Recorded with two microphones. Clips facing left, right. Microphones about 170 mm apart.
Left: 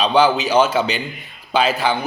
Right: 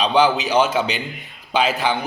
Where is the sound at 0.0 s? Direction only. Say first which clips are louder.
Left 2 dB; 15° right (ahead or behind).